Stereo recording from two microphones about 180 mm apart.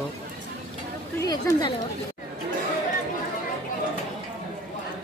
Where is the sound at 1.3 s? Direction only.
20° left (ahead or behind).